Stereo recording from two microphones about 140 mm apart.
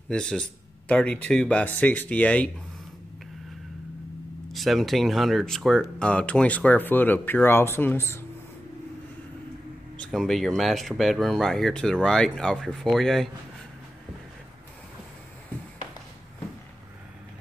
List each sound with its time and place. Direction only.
0.1 s speech: 5° left (ahead or behind)
4.5 s speech: centre (ahead or behind); by 8.2 s 15° left (ahead or behind)
9.9 s speech: centre (ahead or behind)